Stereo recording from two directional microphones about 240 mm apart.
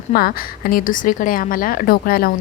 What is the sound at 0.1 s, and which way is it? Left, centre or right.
A woman's voice, left.